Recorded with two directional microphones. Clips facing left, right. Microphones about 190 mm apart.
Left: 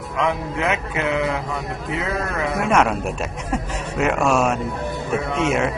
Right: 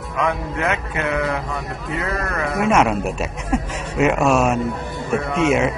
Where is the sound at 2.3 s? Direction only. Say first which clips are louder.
Right 2 dB; centre (ahead or behind).